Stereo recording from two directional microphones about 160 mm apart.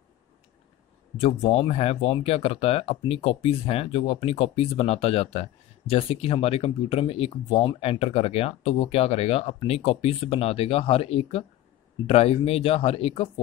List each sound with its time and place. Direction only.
1.2 s speech: 40° left (ahead or behind)